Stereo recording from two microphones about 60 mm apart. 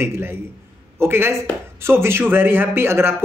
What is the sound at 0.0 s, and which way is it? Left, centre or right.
Speech, right.